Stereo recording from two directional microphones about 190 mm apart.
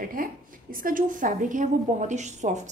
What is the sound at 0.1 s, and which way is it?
A woman's voice, 50° right (ahead or behind).